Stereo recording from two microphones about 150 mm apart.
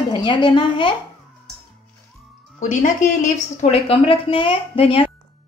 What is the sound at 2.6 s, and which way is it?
Speech, 55° left (ahead or behind).